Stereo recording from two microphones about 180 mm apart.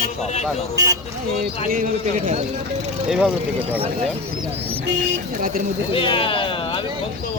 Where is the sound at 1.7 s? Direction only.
45° right (ahead or behind).